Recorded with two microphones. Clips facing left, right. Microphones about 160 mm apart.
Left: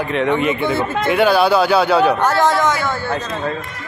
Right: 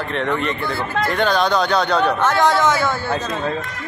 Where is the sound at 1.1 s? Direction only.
10° left (ahead or behind).